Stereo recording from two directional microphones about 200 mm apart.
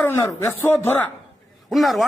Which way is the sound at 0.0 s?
15° left (ahead or behind).